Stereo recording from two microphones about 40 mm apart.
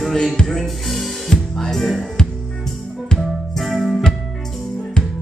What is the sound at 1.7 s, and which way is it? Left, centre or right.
Music, centre.